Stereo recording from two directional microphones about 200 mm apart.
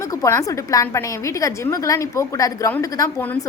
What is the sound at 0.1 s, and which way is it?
A woman's voice, 15° left (ahead or behind).